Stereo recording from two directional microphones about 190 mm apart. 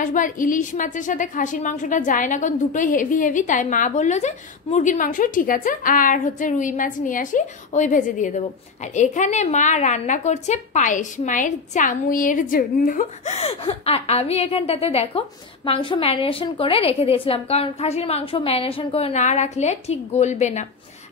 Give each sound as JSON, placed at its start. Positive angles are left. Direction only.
{"t": 0.0, "sound": "a woman's voice", "side_deg": 45}